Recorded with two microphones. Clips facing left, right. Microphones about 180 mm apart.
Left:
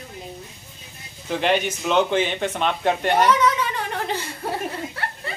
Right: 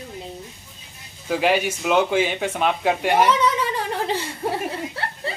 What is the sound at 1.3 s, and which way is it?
Speech, 5° right (ahead or behind).